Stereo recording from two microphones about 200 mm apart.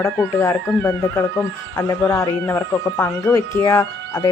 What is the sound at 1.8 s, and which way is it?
Speech, 10° left (ahead or behind).